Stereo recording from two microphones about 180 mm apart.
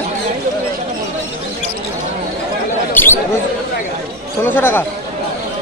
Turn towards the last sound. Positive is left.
turn(degrees=10)  # may be behind; listen again after turning